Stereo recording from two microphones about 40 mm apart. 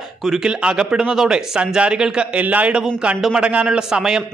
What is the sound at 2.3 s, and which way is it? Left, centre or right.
A man's voice, right.